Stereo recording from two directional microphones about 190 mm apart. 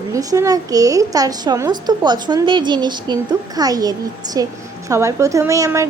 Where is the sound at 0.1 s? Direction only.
15° right (ahead or behind).